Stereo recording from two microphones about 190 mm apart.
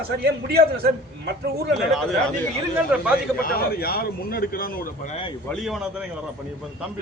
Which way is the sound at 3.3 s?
50° left (ahead or behind).